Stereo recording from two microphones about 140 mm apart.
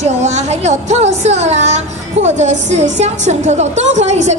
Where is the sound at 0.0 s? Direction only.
55° right (ahead or behind).